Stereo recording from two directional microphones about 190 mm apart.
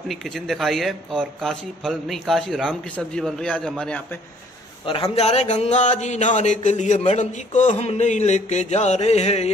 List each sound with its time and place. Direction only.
0.1 s speech: centre (ahead or behind)
5.1 s speech: 35° left (ahead or behind)